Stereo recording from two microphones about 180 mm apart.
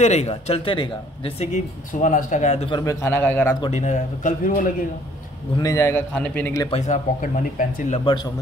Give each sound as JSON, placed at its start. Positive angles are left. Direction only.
{"t": 0.0, "sound": "speech", "side_deg": 40}
{"t": 1.5, "sound": "speech", "side_deg": 45}
{"t": 2.8, "sound": "a man's voice", "side_deg": 15}
{"t": 3.7, "sound": "speech", "side_deg": 40}
{"t": 5.6, "sound": "a man's voice", "side_deg": 15}
{"t": 6.7, "sound": "speech", "side_deg": 40}